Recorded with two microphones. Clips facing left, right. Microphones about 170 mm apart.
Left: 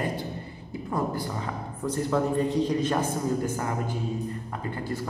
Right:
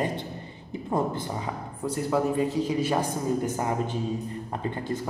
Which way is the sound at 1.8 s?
10° right (ahead or behind).